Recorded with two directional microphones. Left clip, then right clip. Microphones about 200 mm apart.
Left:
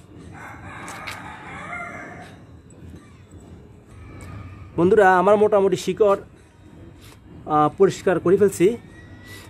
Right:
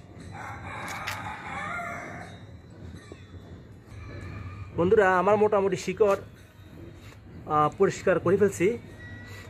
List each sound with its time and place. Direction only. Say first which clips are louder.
4.7 s a man's voice: left 6 dB; 60° left (ahead or behind)
7.4 s a man's voice: left 6 dB; 60° left (ahead or behind)